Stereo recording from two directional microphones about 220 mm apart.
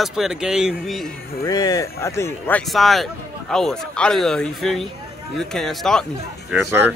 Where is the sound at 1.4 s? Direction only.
15° left (ahead or behind); by 6.0 s centre (ahead or behind).